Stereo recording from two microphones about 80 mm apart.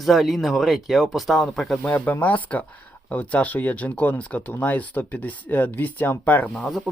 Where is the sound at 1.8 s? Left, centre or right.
Centre.